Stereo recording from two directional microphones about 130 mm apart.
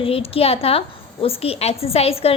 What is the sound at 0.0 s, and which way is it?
A woman's voice, 50° left (ahead or behind).